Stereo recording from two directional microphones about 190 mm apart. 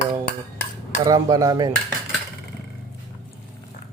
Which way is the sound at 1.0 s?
15° right (ahead or behind).